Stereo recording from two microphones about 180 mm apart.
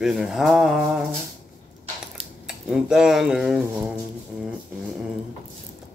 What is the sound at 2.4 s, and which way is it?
Speech, 5° right (ahead or behind).